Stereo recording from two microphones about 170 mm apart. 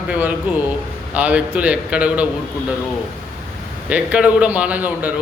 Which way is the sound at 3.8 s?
5° right (ahead or behind).